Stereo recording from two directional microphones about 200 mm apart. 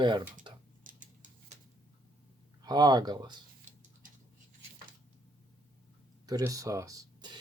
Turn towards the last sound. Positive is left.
turn(degrees=-20)  # may be behind; listen again after turning